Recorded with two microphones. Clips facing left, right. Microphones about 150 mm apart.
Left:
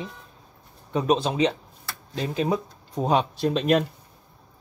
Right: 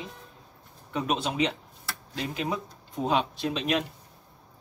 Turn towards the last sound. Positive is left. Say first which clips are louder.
# left 7 dB
turn(degrees=45)  # may be behind; listen again after turning